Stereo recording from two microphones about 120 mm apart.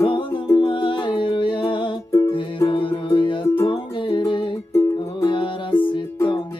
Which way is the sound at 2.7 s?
45° left (ahead or behind).